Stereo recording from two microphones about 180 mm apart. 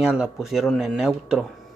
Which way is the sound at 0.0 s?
5° right (ahead or behind).